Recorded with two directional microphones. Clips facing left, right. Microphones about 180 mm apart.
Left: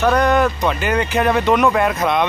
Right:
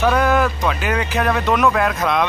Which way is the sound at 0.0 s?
5° right (ahead or behind).